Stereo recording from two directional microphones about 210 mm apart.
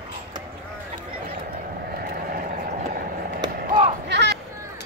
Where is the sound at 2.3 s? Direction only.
45° right (ahead or behind).